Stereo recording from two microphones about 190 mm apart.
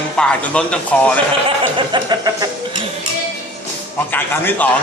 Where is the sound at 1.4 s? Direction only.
25° right (ahead or behind).